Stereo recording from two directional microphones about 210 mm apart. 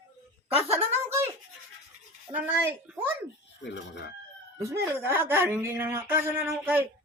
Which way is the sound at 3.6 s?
55° left (ahead or behind).